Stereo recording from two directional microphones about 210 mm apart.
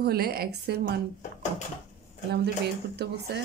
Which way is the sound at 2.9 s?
50° right (ahead or behind).